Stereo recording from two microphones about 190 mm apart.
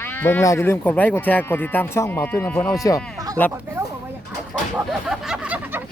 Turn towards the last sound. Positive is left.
turn(degrees=-5)  # may be behind; listen again after turning